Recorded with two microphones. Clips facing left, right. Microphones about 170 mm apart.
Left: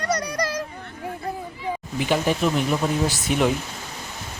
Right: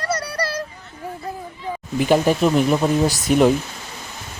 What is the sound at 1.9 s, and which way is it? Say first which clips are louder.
Speech: right 6 dB; 45° right (ahead or behind).